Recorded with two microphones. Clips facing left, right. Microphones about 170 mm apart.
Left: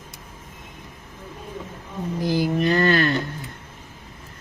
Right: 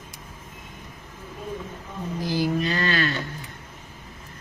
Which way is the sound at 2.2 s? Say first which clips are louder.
Left 3 dB; 50° left (ahead or behind).